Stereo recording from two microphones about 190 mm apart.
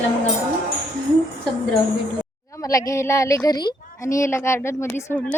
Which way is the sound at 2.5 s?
15° left (ahead or behind).